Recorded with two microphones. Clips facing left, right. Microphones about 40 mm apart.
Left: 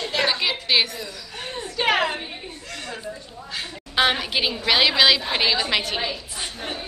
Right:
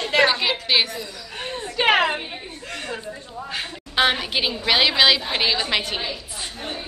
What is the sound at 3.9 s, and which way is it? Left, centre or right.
A woman's voice, centre.